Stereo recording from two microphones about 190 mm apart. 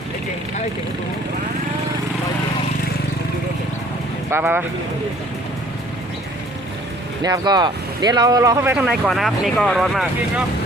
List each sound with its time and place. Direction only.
4.3 s speech: 10° right (ahead or behind)
7.2 s speech: 20° right (ahead or behind)
8.7 s speech: centre (ahead or behind)